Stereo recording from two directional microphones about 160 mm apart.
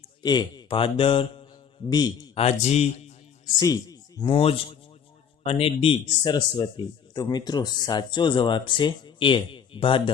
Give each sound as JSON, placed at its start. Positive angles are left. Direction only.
{"t": 0.2, "sound": "speech", "side_deg": 25}
{"t": 2.3, "sound": "a man's voice", "side_deg": 40}
{"t": 3.6, "sound": "a sound", "side_deg": 25}
{"t": 4.3, "sound": "speech", "side_deg": 35}